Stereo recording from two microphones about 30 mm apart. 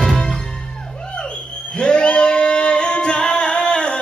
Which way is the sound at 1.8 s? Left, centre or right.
Left.